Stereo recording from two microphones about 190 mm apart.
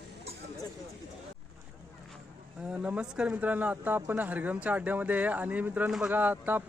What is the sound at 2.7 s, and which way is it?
Speech, 5° right (ahead or behind).